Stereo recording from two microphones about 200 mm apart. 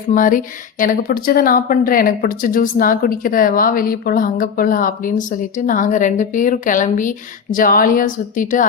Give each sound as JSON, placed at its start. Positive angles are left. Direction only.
{"t": 0.1, "sound": "a woman's voice", "side_deg": 40}